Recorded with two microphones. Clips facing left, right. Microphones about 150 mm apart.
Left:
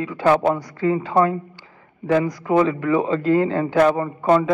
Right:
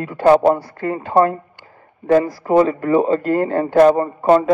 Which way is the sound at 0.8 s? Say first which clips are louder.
Left 3 dB; 50° right (ahead or behind).